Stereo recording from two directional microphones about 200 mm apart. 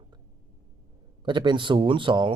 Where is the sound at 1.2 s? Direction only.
25° right (ahead or behind).